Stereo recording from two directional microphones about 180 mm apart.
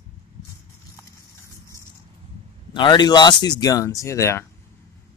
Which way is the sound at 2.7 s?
25° left (ahead or behind).